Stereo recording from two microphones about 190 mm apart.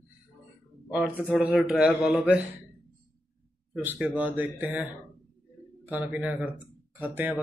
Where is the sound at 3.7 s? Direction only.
10° right (ahead or behind).